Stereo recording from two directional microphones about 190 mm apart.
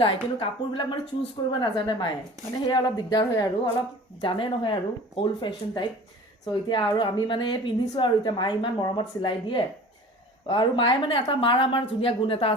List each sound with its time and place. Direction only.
0.0 s a woman's voice: 25° left (ahead or behind)